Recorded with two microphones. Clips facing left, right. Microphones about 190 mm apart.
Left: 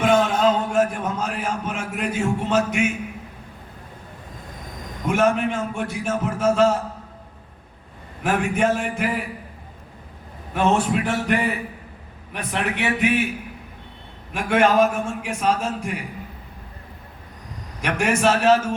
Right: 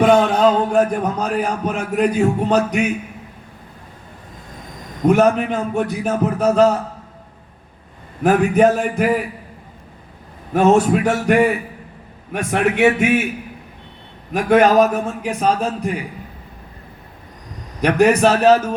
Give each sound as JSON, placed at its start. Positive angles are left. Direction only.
{"t": 0.0, "sound": "a man's voice", "side_deg": -40}
{"t": 5.0, "sound": "a man's voice", "side_deg": -40}
{"t": 8.2, "sound": "a man's voice", "side_deg": -40}
{"t": 10.5, "sound": "a man's voice", "side_deg": -40}
{"t": 14.3, "sound": "a man's voice", "side_deg": -40}
{"t": 17.7, "sound": "a man's voice", "side_deg": -35}